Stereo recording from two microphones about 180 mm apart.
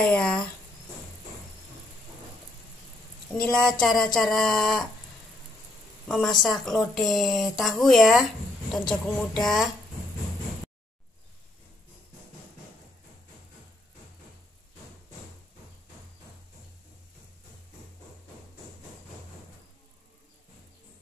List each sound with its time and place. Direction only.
0.0 s a woman's voice: 5° left (ahead or behind)
3.3 s a woman's voice: 5° left (ahead or behind)
6.0 s a woman's voice: 5° left (ahead or behind)